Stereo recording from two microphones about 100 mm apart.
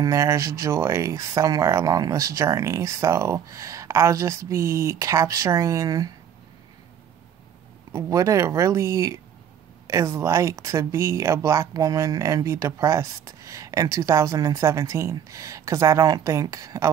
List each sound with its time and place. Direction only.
0.0 s speech: 30° right (ahead or behind)
7.9 s speech: 35° right (ahead or behind)